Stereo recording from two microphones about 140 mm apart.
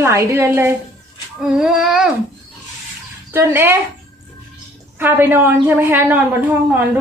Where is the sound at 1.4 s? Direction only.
5° right (ahead or behind).